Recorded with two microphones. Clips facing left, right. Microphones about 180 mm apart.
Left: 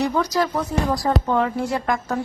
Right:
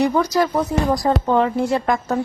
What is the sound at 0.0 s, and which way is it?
A man's voice, 15° right (ahead or behind).